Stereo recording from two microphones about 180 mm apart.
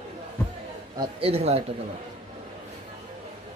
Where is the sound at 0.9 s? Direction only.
30° right (ahead or behind).